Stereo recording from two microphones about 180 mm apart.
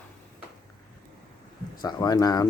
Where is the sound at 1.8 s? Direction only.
20° left (ahead or behind).